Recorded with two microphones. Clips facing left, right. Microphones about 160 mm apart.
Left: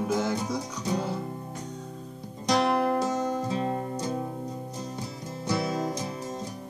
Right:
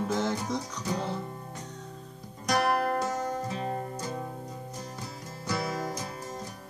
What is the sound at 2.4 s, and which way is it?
Music, 20° left (ahead or behind).